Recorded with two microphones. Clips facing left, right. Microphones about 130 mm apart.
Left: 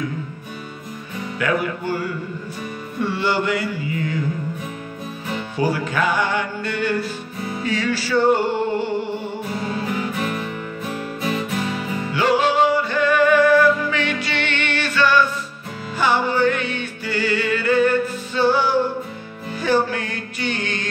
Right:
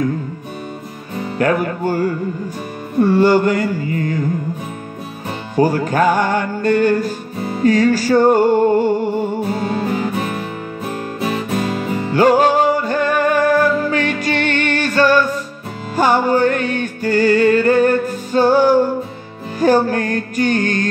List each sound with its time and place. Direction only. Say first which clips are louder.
1.4 s music: right 5 dB; 45° right (ahead or behind)
5.3 s music: right 6 dB; 40° right (ahead or behind)
12.0 s music: right 6 dB; 40° right (ahead or behind)